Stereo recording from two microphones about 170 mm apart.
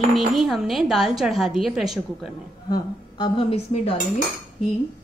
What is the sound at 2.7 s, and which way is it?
A woman's voice, 30° left (ahead or behind).